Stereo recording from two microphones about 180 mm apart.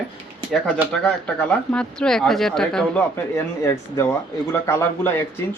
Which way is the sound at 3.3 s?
15° left (ahead or behind).